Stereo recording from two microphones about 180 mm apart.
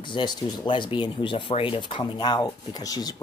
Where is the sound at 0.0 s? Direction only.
25° left (ahead or behind).